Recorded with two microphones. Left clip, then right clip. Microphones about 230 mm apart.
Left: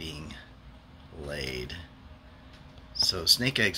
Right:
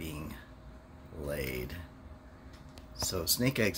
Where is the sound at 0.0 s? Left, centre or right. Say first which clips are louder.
Left 3 dB; centre.